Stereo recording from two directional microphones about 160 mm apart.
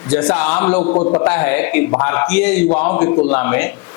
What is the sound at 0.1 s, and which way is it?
Speech, 5° left (ahead or behind).